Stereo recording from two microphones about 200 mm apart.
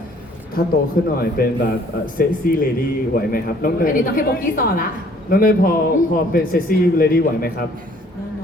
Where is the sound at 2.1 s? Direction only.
45° left (ahead or behind).